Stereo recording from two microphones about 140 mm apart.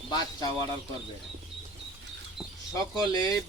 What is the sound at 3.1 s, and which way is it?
Speech, 30° left (ahead or behind).